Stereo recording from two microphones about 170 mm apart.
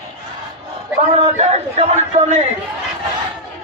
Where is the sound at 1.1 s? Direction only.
40° right (ahead or behind).